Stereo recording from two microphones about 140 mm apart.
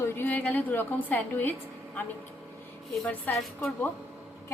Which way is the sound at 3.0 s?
10° left (ahead or behind).